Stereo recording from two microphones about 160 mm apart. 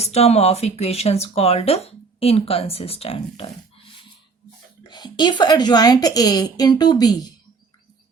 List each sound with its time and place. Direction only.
0.0 s speech: 40° left (ahead or behind)
4.9 s a woman's voice: 25° left (ahead or behind)